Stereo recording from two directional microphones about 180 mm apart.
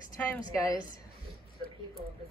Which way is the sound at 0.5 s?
20° left (ahead or behind).